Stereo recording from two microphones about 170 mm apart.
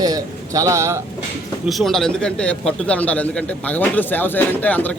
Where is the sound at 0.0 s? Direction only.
20° right (ahead or behind).